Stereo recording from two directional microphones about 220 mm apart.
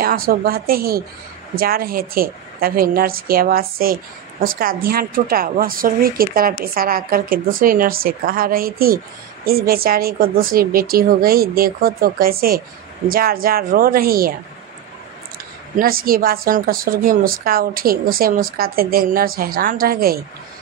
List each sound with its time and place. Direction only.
0.0 s a woman's voice: 40° right (ahead or behind)
15.7 s a woman's voice: 40° right (ahead or behind)